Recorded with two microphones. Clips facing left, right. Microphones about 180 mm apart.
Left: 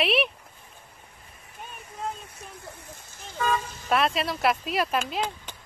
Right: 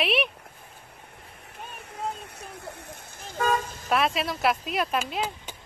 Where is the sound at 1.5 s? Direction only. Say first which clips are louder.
Right 1 dB; 65° right (ahead or behind).